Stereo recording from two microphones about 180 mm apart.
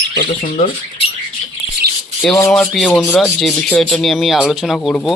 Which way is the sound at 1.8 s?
60° right (ahead or behind).